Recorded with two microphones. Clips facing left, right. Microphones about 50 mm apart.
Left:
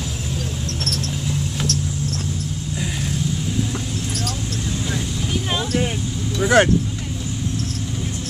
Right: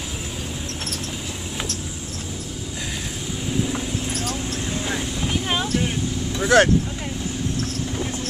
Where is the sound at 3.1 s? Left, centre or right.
Centre.